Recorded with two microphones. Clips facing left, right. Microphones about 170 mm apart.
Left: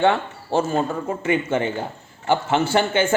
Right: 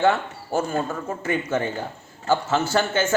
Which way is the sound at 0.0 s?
25° left (ahead or behind).